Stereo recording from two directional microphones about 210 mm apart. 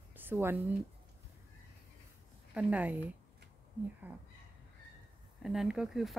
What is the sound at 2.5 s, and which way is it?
Speech, 5° right (ahead or behind).